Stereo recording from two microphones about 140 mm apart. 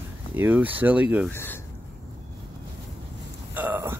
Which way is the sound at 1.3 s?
15° left (ahead or behind).